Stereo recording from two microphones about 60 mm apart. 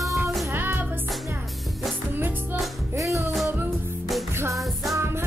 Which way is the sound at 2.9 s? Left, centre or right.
Right.